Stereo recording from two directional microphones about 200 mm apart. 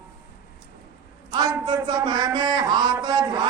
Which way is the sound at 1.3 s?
20° right (ahead or behind).